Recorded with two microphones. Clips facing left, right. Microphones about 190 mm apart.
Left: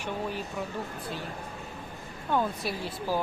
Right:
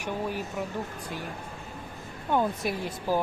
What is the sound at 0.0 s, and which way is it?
Speech, 10° right (ahead or behind).